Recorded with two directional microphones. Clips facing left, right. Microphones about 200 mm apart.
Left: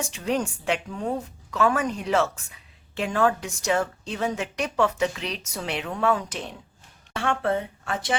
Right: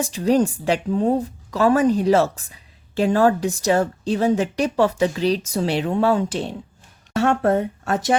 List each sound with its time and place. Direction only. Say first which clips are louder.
0.0 s a woman's voice: right 8 dB; 35° right (ahead or behind)
7.1 s speech: right 7 dB; 40° right (ahead or behind)